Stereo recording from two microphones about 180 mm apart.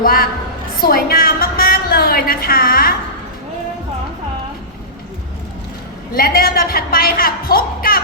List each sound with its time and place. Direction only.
0.0 s a woman's voice: 55° left (ahead or behind)
6.1 s a woman's voice: 55° left (ahead or behind)